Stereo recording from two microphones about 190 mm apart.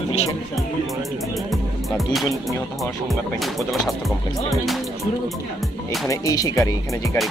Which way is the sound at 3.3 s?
Centre (ahead or behind).